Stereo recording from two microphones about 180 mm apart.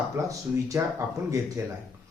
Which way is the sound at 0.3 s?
20° right (ahead or behind).